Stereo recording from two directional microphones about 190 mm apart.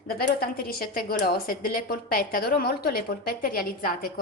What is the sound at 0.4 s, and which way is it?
A woman's voice, 50° left (ahead or behind).